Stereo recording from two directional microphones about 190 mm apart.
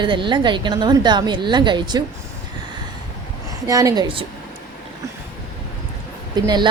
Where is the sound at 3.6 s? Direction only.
20° right (ahead or behind).